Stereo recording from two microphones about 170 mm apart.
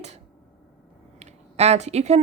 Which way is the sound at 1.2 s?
40° right (ahead or behind).